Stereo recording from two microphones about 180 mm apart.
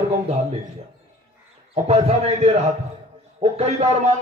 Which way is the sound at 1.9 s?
35° right (ahead or behind).